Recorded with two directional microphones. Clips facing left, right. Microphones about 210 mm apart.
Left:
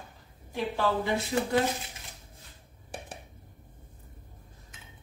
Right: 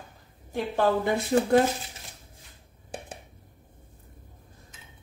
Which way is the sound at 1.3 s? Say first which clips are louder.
Right 7 dB; 55° right (ahead or behind).